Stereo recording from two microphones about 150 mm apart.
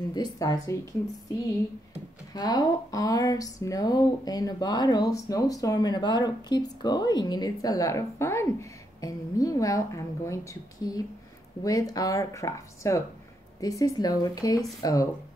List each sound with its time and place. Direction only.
0.1 s speech: 25° left (ahead or behind)
2.3 s speech: 25° left (ahead or behind)